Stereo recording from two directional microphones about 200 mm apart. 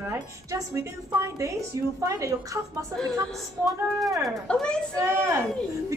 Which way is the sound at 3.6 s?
Centre (ahead or behind).